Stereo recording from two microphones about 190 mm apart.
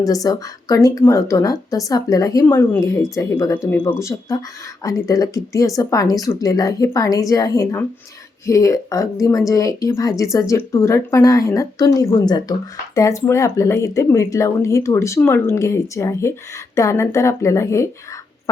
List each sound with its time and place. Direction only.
0.0 s speech: 20° left (ahead or behind)